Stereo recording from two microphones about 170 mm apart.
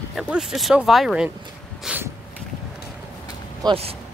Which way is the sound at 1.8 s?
10° right (ahead or behind).